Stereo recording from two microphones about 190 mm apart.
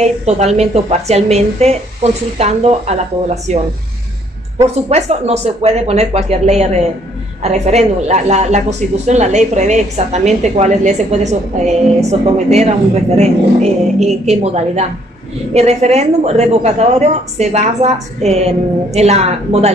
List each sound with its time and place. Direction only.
0.0 s a woman's voice: 35° right (ahead or behind)
4.6 s a woman's voice: 35° right (ahead or behind)